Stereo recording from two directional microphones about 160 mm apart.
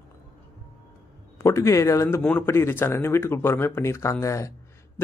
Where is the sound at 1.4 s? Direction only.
20° left (ahead or behind).